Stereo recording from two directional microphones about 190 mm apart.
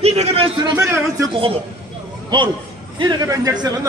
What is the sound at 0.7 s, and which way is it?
Speech, 15° right (ahead or behind).